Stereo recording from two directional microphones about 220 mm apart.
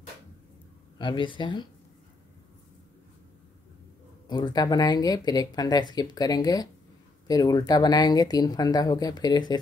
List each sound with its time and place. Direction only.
0.9 s speech: 20° left (ahead or behind)
4.3 s speech: 20° left (ahead or behind)